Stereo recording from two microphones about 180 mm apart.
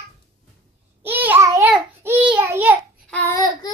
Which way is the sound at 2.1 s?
10° right (ahead or behind).